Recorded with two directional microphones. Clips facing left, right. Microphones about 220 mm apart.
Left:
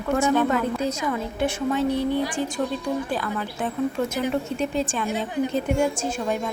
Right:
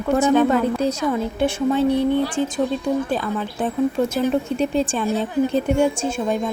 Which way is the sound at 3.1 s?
25° right (ahead or behind).